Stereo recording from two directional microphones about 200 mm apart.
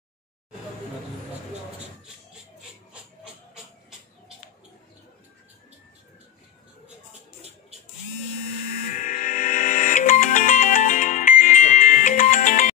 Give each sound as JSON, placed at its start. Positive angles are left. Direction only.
{"t": 8.9, "sound": "music", "side_deg": 40}